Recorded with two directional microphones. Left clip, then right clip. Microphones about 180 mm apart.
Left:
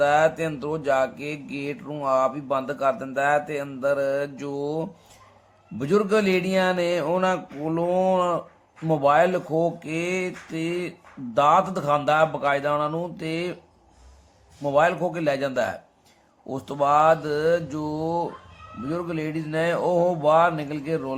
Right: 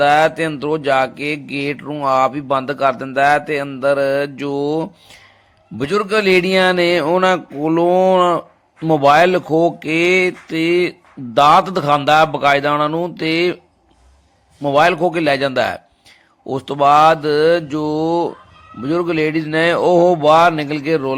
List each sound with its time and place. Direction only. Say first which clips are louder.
0.0 s speech: right 7 dB; 30° right (ahead or behind)
14.6 s speech: right 8 dB; 30° right (ahead or behind)